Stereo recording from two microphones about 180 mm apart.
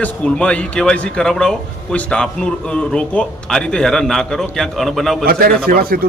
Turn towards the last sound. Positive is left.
turn(degrees=-55)  # may be behind; listen again after turning